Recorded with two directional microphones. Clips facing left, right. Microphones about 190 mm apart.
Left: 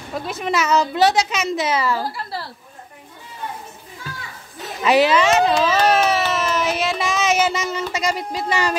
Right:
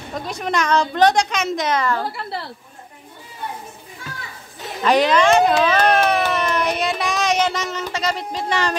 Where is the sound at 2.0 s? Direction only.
25° right (ahead or behind).